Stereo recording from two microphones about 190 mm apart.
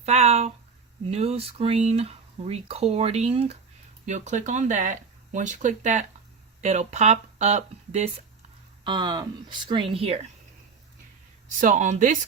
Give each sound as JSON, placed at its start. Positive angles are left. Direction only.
{"t": 0.0, "sound": "speech", "side_deg": -35}
{"t": 11.6, "sound": "speech", "side_deg": -40}